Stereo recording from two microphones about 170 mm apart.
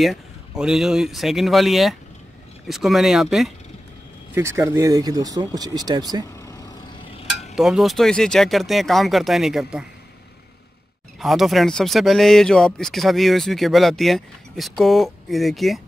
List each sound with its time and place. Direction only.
0.0 s speech: centre (ahead or behind)
4.4 s speech: 15° right (ahead or behind)
6.2 s vehicle: 20° left (ahead or behind)
7.1 s stir: 35° left (ahead or behind)
7.5 s speech: centre (ahead or behind)
11.1 s speech: centre (ahead or behind)